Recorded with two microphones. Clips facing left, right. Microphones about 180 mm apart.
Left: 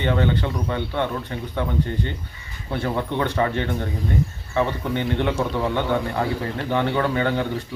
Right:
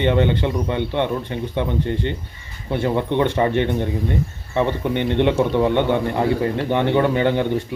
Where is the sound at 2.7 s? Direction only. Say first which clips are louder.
Right 5 dB; 20° right (ahead or behind).